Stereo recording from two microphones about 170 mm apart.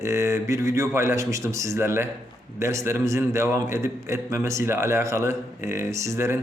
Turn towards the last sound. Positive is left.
turn(degrees=-15)  # may be behind; listen again after turning